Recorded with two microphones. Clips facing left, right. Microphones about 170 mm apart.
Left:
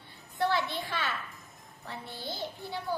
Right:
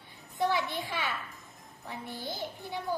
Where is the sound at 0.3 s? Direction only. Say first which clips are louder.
Even; 15° right (ahead or behind).